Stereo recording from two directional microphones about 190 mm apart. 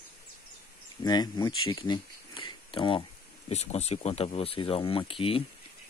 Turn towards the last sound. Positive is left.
turn(degrees=30)  # may be behind; listen again after turning